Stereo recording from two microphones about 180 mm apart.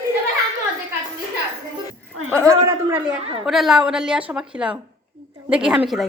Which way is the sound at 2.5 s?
15° right (ahead or behind).